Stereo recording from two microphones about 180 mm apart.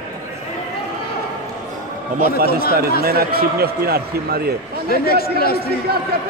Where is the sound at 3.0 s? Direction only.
55° right (ahead or behind).